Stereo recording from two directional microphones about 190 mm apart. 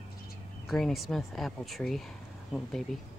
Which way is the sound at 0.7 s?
Centre (ahead or behind).